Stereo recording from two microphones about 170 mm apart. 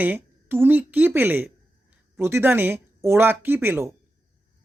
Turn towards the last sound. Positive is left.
turn(degrees=-15)  # may be behind; listen again after turning